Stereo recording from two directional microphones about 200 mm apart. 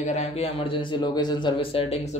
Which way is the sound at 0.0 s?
35° left (ahead or behind).